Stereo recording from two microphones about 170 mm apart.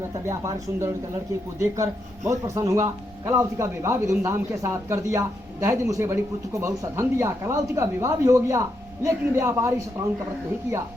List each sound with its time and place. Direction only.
0.3 s speech: 15° right (ahead or behind)